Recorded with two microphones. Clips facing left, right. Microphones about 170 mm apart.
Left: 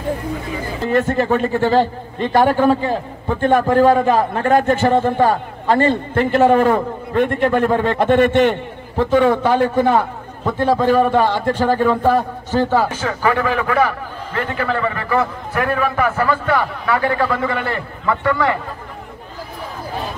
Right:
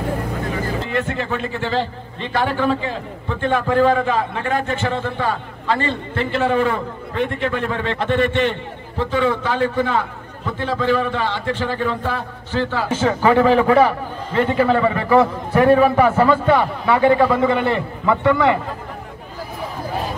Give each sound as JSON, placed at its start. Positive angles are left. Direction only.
{"t": 0.8, "sound": "a man's voice", "side_deg": 45}
{"t": 12.9, "sound": "a man's voice", "side_deg": -25}